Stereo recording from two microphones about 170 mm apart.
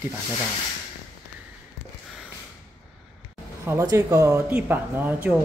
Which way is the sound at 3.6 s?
20° right (ahead or behind).